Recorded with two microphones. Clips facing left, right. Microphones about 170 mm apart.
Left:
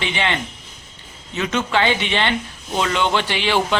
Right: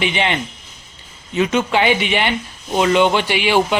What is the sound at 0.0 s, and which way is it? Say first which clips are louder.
Speech: right 3 dB; 15° right (ahead or behind).